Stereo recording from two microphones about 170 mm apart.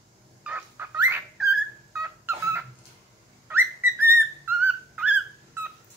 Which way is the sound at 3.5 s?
10° right (ahead or behind).